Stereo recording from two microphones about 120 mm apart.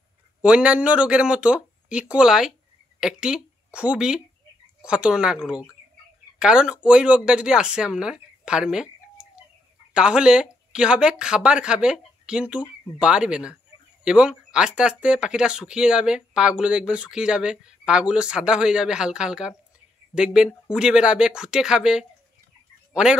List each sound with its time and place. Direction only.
0.4 s speech: 10° right (ahead or behind)
20.6 s speech: 5° right (ahead or behind)